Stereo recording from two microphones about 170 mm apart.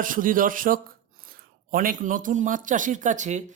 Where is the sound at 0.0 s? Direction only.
55° right (ahead or behind).